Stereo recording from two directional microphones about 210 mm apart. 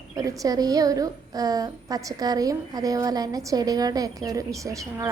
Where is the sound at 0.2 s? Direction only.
15° right (ahead or behind).